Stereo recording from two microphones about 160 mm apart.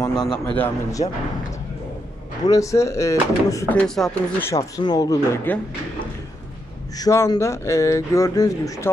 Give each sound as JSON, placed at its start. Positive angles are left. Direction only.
{"t": 0.0, "sound": "a man's voice", "side_deg": 25}
{"t": 2.4, "sound": "speech", "side_deg": 20}
{"t": 3.7, "sound": "speech", "side_deg": 5}
{"t": 4.4, "sound": "speech", "side_deg": 20}
{"t": 7.0, "sound": "speech", "side_deg": 20}